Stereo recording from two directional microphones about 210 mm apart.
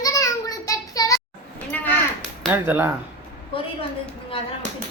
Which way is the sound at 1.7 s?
5° left (ahead or behind).